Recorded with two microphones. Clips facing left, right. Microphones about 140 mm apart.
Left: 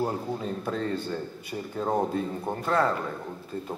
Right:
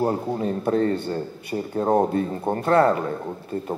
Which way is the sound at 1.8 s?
35° right (ahead or behind).